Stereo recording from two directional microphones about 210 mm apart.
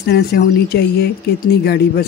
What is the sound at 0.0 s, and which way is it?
Speech, 50° left (ahead or behind).